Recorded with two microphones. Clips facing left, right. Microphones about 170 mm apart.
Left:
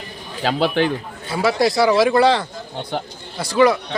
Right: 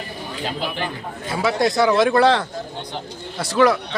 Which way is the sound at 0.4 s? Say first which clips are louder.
Left 9 dB; 75° left (ahead or behind).